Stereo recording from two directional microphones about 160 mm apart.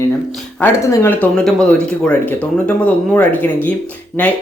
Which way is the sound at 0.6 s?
15° left (ahead or behind).